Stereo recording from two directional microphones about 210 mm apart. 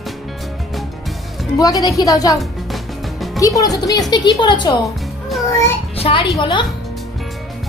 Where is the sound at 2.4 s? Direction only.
Centre (ahead or behind).